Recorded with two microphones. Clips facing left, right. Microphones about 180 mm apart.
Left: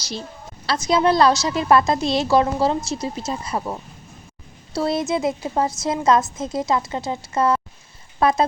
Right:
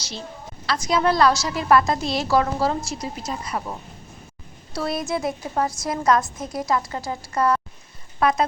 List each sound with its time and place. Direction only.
0.7 s a woman's voice: 25° left (ahead or behind)